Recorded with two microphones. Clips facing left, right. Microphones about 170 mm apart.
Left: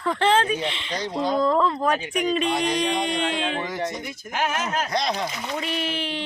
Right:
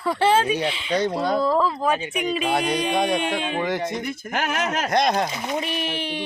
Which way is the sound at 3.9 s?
55° right (ahead or behind).